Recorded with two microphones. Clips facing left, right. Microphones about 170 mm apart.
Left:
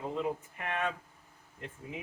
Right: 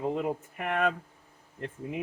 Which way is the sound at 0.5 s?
70° right (ahead or behind).